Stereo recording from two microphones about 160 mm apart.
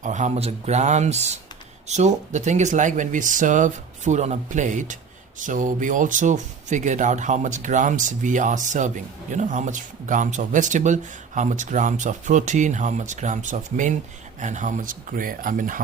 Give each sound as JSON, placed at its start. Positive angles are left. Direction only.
{"t": 0.0, "sound": "speech", "side_deg": -50}